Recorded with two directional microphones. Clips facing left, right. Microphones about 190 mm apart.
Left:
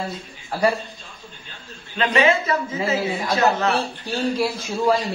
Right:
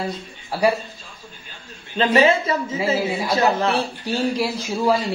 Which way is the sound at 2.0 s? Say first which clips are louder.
Right 2 dB; 30° right (ahead or behind).